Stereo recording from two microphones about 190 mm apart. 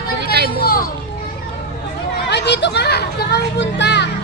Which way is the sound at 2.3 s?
65° left (ahead or behind).